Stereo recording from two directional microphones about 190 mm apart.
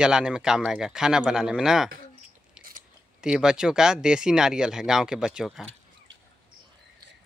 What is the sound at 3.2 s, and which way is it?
Speech, 5° right (ahead or behind).